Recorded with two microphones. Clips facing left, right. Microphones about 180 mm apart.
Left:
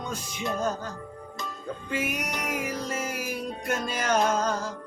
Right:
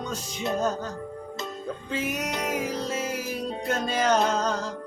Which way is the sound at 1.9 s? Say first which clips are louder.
Right 1 dB; 10° left (ahead or behind).